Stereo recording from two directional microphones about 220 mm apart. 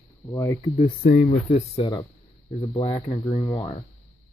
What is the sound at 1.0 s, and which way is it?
Speech, 40° left (ahead or behind).